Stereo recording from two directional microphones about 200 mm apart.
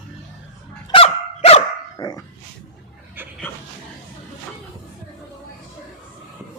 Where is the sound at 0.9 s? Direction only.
30° left (ahead or behind).